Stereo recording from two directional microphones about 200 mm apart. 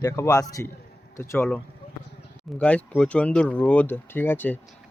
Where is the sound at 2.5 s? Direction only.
5° left (ahead or behind).